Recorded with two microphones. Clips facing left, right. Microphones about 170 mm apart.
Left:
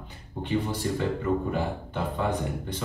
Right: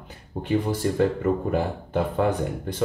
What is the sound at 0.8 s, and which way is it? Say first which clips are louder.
Speech: right 4 dB; 55° right (ahead or behind).